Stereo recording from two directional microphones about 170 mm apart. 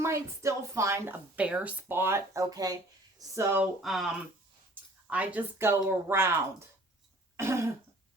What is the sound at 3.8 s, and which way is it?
Speech, centre (ahead or behind).